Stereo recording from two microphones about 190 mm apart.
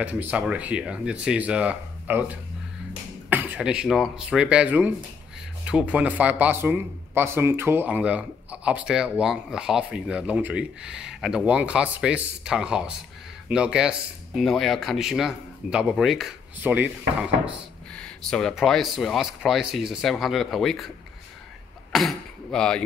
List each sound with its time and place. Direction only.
0.0 s speech: 5° right (ahead or behind)
17.9 s speech: 5° left (ahead or behind)
21.9 s speech: centre (ahead or behind)